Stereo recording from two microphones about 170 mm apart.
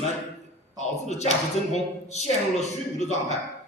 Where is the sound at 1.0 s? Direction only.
40° left (ahead or behind).